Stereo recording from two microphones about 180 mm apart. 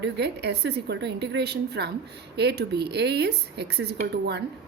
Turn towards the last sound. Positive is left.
turn(degrees=-65)  # may be behind; listen again after turning